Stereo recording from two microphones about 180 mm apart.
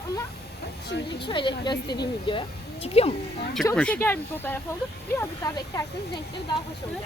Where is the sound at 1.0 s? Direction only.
25° left (ahead or behind).